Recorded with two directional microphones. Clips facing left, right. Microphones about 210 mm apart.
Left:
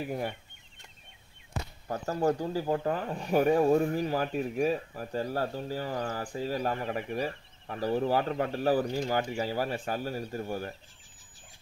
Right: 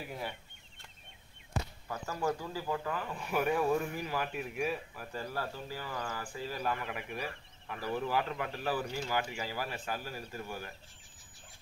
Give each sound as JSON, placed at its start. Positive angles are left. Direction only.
{"t": 1.9, "sound": "speech", "side_deg": 40}